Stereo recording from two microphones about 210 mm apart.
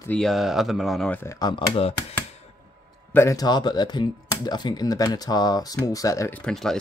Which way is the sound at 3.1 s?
15° left (ahead or behind).